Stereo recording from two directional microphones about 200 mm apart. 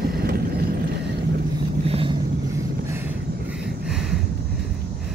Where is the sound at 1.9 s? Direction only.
30° right (ahead or behind).